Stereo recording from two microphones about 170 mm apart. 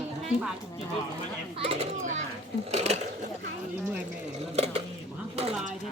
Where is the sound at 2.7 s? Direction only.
40° right (ahead or behind).